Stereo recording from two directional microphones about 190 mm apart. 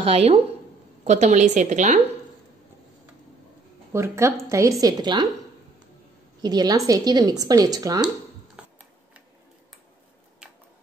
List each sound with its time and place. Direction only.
0.0 s a woman's voice: 30° right (ahead or behind)
3.9 s speech: 15° right (ahead or behind)
6.4 s speech: 20° right (ahead or behind)